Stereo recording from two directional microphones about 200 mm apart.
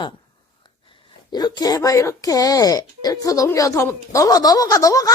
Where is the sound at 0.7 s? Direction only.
25° left (ahead or behind).